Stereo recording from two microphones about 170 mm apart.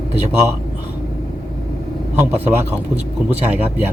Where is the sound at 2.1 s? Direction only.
10° right (ahead or behind).